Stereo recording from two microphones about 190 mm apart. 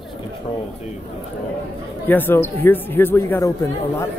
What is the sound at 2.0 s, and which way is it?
Speech, 10° left (ahead or behind).